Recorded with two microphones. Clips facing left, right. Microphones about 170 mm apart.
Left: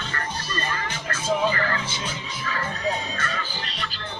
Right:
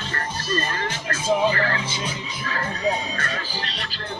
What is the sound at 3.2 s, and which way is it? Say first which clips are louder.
Music: right 1 dB; 40° right (ahead or behind).